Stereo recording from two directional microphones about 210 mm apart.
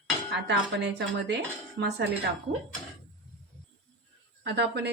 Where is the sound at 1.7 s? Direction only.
50° right (ahead or behind).